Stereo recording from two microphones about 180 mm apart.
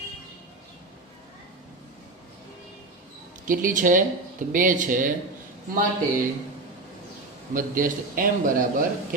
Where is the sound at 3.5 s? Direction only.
50° right (ahead or behind).